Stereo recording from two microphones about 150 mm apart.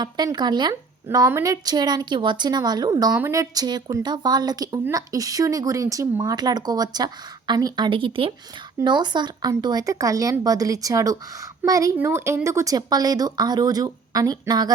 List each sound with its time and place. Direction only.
0.0 s a woman's voice: 30° right (ahead or behind)
3.1 s a woman's voice: 10° right (ahead or behind)
3.3 s a woman's voice: 25° right (ahead or behind)